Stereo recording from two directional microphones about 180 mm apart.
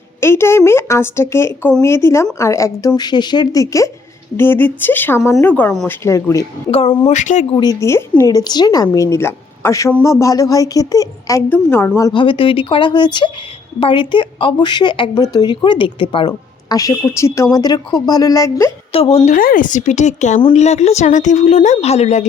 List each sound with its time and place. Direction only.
0.2 s a woman's voice: 15° left (ahead or behind)
6.7 s a woman's voice: 30° left (ahead or behind)
7.5 s a woman's voice: 20° left (ahead or behind)
12.1 s a woman's voice: 30° left (ahead or behind)
18.9 s a woman's voice: 30° left (ahead or behind)
19.3 s a woman's voice: 50° left (ahead or behind)